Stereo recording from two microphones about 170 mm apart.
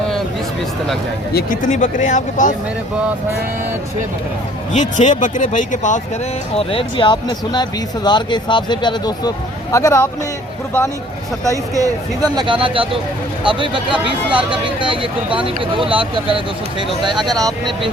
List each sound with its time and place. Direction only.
1.3 s speech: 60° left (ahead or behind)
4.7 s speech: 45° left (ahead or behind)
6.6 s a man's voice: 35° left (ahead or behind); by 10.1 s 15° left (ahead or behind)
11.4 s speech: 20° right (ahead or behind)